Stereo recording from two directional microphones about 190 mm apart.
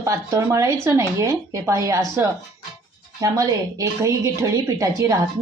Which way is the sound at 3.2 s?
20° right (ahead or behind).